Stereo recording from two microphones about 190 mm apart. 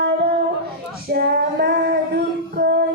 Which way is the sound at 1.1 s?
55° right (ahead or behind).